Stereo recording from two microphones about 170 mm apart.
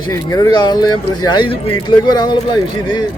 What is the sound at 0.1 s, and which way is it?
Speech, 20° left (ahead or behind).